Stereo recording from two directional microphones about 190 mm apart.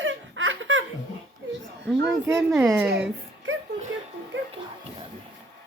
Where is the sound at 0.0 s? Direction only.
90° right.